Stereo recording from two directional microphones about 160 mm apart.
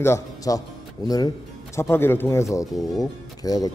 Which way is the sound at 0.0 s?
20° left (ahead or behind).